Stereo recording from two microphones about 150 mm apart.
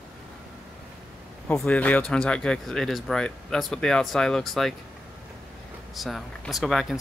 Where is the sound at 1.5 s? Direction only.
10° left (ahead or behind).